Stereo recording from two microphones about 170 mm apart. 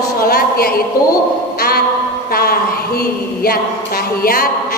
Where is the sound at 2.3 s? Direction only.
65° left (ahead or behind).